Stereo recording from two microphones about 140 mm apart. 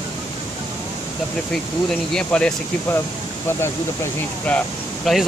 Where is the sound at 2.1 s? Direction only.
5° left (ahead or behind).